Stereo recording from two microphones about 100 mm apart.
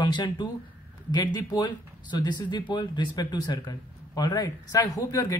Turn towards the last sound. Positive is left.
turn(degrees=35)  # may be behind; listen again after turning